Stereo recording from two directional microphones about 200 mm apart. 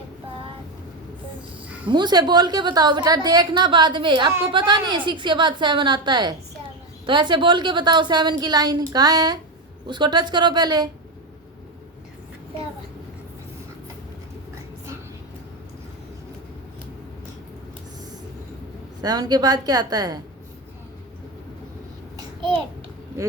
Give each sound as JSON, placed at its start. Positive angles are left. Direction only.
{"t": 1.9, "sound": "a woman's voice", "side_deg": -20}
{"t": 19.0, "sound": "a woman's voice", "side_deg": -20}